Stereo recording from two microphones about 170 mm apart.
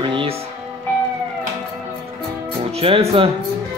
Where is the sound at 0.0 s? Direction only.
30° right (ahead or behind).